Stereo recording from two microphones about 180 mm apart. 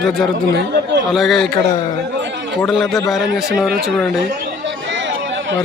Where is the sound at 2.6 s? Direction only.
Centre (ahead or behind).